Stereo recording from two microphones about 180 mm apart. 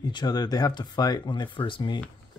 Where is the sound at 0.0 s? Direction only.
25° left (ahead or behind).